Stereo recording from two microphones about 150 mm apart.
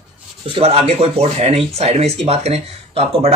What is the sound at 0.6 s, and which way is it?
Speech, 45° right (ahead or behind).